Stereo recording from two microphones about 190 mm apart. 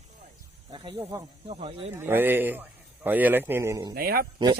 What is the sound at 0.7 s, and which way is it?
Speech, 25° right (ahead or behind).